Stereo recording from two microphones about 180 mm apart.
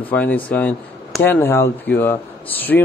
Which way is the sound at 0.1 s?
10° left (ahead or behind).